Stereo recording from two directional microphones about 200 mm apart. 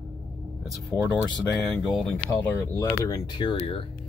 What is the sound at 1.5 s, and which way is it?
Speech, centre (ahead or behind).